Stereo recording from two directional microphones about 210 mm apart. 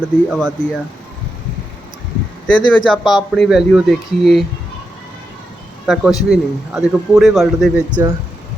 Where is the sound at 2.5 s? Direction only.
5° left (ahead or behind).